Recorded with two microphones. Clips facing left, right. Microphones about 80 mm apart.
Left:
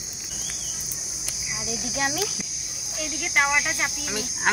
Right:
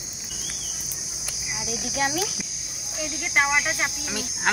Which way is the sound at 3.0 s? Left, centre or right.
Centre.